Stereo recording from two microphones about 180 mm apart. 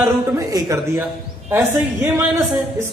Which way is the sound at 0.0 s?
20° right (ahead or behind).